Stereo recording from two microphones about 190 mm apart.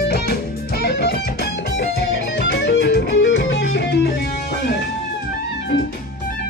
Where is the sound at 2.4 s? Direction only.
60° left (ahead or behind).